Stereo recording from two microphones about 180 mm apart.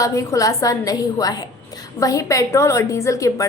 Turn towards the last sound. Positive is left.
turn(degrees=20)  # may be behind; listen again after turning